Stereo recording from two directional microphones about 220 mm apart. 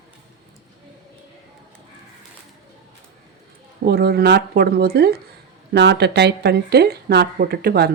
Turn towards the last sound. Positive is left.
turn(degrees=-45)  # may be behind; listen again after turning